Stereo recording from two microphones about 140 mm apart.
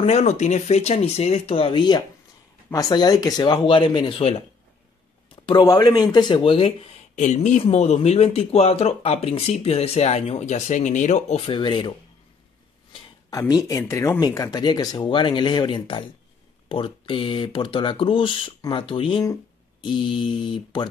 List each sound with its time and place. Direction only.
0.0 s speech: 50° left (ahead or behind)
7.2 s speech: 60° left (ahead or behind)
11.4 s speech: 35° left (ahead or behind)
13.3 s speech: 25° left (ahead or behind)